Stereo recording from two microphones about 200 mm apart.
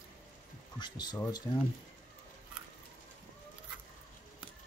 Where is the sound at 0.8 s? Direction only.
20° left (ahead or behind).